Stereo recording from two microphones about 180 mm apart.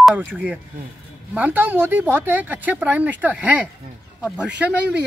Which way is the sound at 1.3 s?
10° right (ahead or behind).